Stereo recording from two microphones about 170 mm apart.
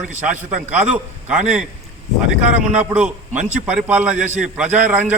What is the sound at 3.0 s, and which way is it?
Speech, 45° right (ahead or behind).